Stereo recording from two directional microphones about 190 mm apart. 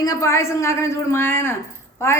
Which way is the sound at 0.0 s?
15° left (ahead or behind).